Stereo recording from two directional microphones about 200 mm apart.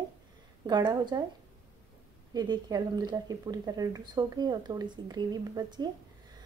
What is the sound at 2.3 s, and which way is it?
Speech, 20° right (ahead or behind).